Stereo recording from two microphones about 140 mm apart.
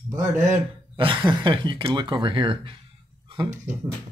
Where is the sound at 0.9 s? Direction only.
35° right (ahead or behind).